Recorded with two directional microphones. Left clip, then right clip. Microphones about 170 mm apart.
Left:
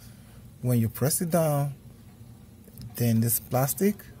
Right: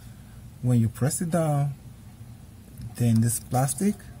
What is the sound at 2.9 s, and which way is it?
Speech, 25° left (ahead or behind).